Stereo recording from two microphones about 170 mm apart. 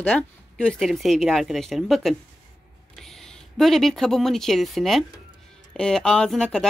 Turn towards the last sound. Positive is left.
turn(degrees=5)  # may be behind; listen again after turning